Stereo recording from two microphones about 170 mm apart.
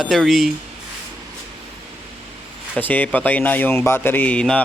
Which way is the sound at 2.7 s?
10° left (ahead or behind).